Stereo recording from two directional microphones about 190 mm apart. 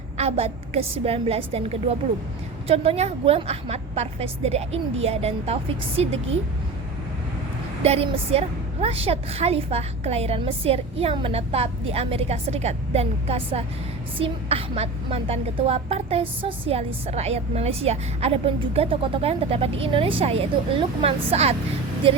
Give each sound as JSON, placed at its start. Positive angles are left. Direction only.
{"t": 0.2, "sound": "a woman's voice", "side_deg": -30}
{"t": 7.8, "sound": "a woman's voice", "side_deg": -30}